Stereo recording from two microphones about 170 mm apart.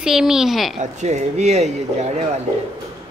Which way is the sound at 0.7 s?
40° right (ahead or behind).